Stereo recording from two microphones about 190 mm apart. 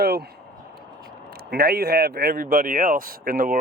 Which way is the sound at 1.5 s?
55° right (ahead or behind).